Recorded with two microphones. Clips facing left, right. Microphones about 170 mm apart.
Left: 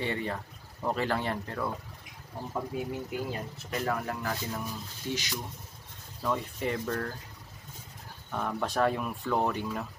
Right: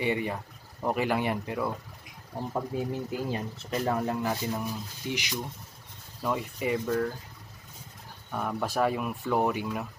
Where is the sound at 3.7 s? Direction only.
25° right (ahead or behind); by 7.1 s 5° right (ahead or behind).